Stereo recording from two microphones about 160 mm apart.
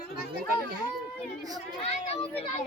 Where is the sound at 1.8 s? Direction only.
40° left (ahead or behind).